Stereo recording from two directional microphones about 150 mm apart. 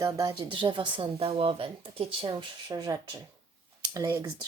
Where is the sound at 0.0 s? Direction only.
25° right (ahead or behind).